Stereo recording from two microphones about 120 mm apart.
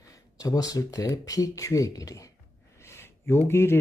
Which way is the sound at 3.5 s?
20° left (ahead or behind).